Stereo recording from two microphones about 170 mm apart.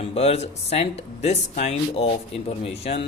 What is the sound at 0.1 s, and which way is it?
Speech, 35° left (ahead or behind).